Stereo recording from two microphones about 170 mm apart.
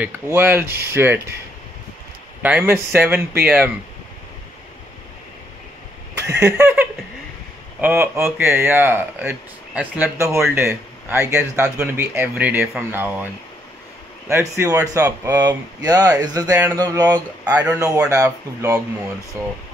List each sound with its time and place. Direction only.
0.0 s speech: 10° right (ahead or behind)
2.4 s speech: 10° right (ahead or behind)
6.5 s speech: 10° right (ahead or behind)